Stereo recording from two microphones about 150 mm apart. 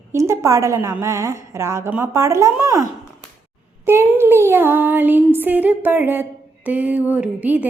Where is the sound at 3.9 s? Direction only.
15° right (ahead or behind).